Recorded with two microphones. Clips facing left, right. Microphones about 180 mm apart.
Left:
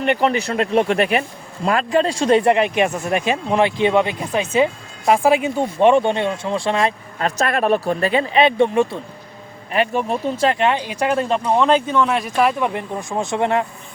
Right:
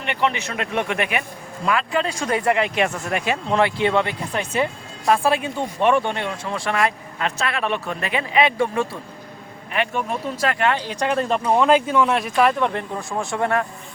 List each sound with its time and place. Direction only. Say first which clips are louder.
0.0 s speech: left 6 dB; 40° left (ahead or behind); by 6.9 s 25° left (ahead or behind)
7.2 s speech: left 5 dB; 40° left (ahead or behind); by 9.0 s 20° left (ahead or behind)
9.7 s speech: left 5 dB; 35° left (ahead or behind); by 11.1 s 15° left (ahead or behind)
11.1 s speech: left 1 dB; centre (ahead or behind); by 13.7 s 20° left (ahead or behind)